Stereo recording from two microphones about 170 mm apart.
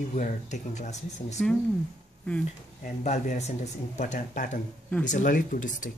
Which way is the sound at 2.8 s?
45° left (ahead or behind).